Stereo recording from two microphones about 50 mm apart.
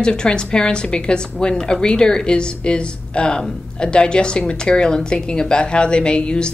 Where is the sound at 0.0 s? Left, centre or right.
Centre.